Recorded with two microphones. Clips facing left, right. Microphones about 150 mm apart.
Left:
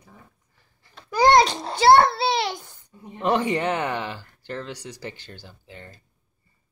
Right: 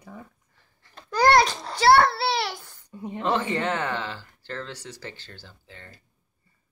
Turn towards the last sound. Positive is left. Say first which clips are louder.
# left 4 dB
turn(degrees=15)  # may be behind; listen again after turning